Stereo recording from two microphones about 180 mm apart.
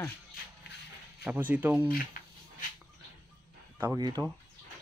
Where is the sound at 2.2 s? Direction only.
50° left (ahead or behind).